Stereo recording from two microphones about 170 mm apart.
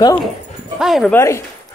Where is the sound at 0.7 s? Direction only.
Centre (ahead or behind).